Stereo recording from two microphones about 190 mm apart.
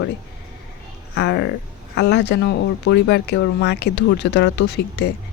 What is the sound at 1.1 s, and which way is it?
Speech, 65° left (ahead or behind).